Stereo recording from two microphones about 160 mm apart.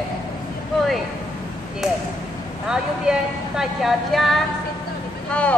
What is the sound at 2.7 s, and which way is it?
A woman's voice, 5° right (ahead or behind).